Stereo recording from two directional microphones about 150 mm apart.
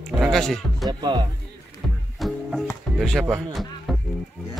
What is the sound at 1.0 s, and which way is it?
Speech, 30° right (ahead or behind).